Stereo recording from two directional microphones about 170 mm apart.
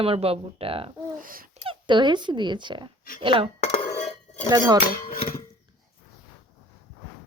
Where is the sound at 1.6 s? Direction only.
30° right (ahead or behind).